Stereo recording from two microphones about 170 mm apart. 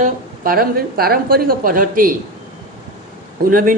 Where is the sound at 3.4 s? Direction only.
55° right (ahead or behind).